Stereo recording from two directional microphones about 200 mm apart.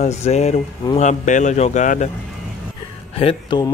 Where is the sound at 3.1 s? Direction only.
30° left (ahead or behind).